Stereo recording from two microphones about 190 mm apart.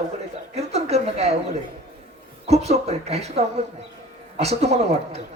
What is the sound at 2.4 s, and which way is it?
A man's voice, 35° right (ahead or behind).